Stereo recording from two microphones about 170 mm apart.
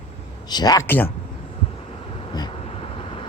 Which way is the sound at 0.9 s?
10° left (ahead or behind).